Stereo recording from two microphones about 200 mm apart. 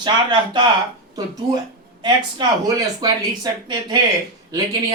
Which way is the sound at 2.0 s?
20° right (ahead or behind).